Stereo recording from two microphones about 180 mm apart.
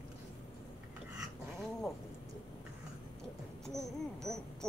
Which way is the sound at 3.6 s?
Centre (ahead or behind).